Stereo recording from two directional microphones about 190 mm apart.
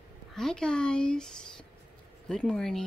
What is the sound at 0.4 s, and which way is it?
Speech, 5° left (ahead or behind).